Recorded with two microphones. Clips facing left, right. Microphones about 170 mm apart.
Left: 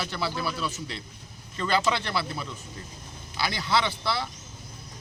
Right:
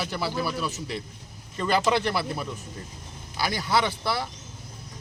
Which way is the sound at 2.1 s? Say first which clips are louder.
Right 2 dB; 15° right (ahead or behind).